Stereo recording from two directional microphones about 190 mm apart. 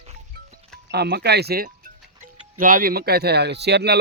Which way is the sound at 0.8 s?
60° right (ahead or behind).